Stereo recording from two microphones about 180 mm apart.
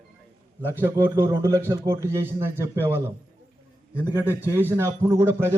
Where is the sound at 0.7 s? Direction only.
15° right (ahead or behind).